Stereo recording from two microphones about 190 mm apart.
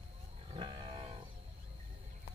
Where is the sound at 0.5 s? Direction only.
25° right (ahead or behind).